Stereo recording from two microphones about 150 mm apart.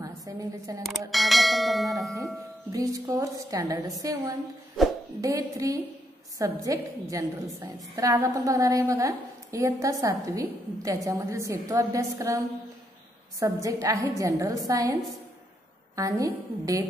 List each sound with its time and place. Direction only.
0.0 s a woman's voice: 20° right (ahead or behind)
0.8 s bell: centre (ahead or behind)
2.7 s a woman's voice: 20° right (ahead or behind)
4.8 s music: centre (ahead or behind)
5.2 s a woman's voice: 20° right (ahead or behind)
16.0 s a woman's voice: 20° right (ahead or behind)